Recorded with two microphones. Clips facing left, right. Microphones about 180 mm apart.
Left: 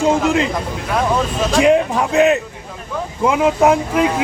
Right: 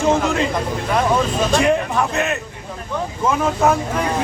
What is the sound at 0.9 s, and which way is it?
Speech, centre (ahead or behind).